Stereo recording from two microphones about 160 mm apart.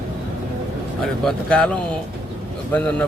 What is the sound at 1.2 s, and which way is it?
Speech, 5° left (ahead or behind).